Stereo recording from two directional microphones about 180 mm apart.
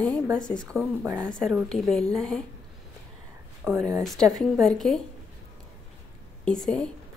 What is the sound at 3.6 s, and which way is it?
Speech, 15° right (ahead or behind).